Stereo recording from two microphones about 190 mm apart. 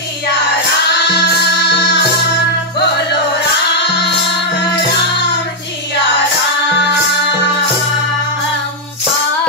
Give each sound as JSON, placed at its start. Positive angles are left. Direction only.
{"t": 1.1, "sound": "music", "side_deg": 65}